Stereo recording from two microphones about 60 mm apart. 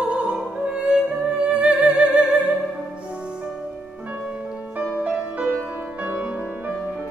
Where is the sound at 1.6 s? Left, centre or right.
Centre.